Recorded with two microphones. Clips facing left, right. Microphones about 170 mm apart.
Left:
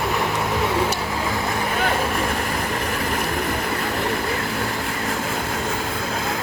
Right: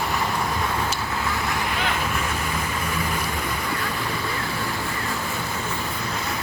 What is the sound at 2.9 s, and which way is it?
Vehicle, 65° left (ahead or behind).